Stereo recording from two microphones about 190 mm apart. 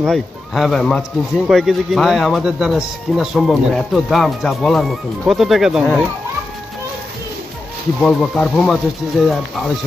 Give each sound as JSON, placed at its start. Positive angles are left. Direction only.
{"t": 0.0, "sound": "speech", "side_deg": 0}
{"t": 8.0, "sound": "speech", "side_deg": 0}